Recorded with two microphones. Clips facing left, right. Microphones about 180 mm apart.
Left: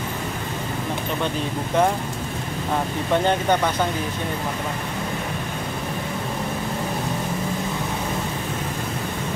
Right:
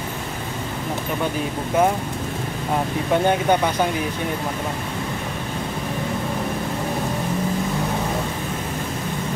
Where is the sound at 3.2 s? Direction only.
10° right (ahead or behind).